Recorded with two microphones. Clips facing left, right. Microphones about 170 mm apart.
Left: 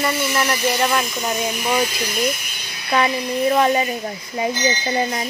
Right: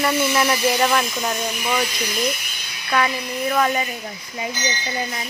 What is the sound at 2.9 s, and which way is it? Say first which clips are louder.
Speech: left 3 dB; 25° left (ahead or behind).